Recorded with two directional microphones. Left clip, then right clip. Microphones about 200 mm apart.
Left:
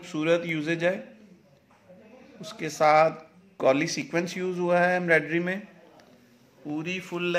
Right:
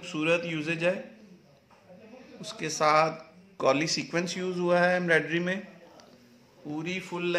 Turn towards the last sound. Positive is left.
turn(degrees=20)  # may be behind; listen again after turning